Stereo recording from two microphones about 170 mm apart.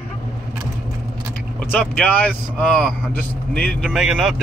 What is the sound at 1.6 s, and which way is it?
Speech, 10° left (ahead or behind).